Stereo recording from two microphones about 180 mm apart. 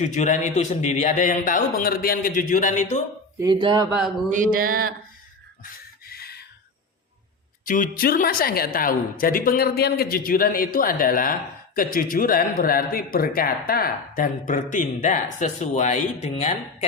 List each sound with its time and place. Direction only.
0.0 s a woman's voice: 40° left (ahead or behind)
3.4 s speech: 25° right (ahead or behind)
3.8 s speech: 5° right (ahead or behind)
4.3 s a sound: 50° right (ahead or behind)
5.6 s chicken: 60° left (ahead or behind)
7.6 s a woman's voice: 50° left (ahead or behind)